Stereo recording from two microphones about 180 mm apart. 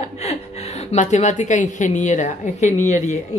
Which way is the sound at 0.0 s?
35° left (ahead or behind).